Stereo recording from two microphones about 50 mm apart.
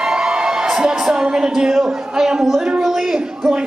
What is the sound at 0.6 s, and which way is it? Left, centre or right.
A man's voice, centre.